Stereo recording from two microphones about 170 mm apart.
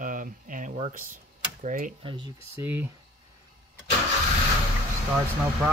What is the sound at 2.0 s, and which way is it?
Speech, 25° right (ahead or behind).